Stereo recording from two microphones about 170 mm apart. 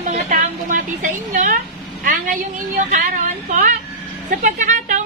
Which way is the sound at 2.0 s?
50° right (ahead or behind).